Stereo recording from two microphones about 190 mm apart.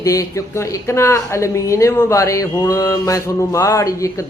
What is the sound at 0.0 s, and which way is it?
A woman's voice, 15° left (ahead or behind).